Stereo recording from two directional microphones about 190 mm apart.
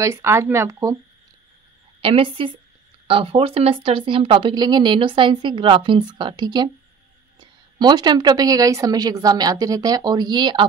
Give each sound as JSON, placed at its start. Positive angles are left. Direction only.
{"t": 0.0, "sound": "speech", "side_deg": -15}
{"t": 2.0, "sound": "a woman's voice", "side_deg": -30}